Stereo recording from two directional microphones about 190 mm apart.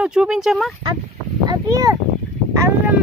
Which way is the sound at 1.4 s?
20° right (ahead or behind).